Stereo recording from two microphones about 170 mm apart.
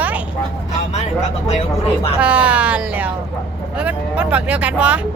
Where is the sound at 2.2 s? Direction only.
5° right (ahead or behind).